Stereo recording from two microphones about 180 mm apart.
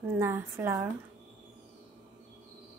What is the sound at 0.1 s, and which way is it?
Speech, 15° right (ahead or behind).